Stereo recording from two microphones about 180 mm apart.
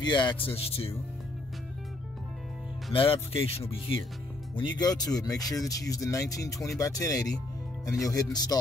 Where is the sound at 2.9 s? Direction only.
30° left (ahead or behind).